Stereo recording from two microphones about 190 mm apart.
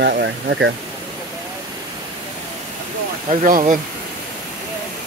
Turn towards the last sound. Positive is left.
turn(degrees=-45)  # may be behind; listen again after turning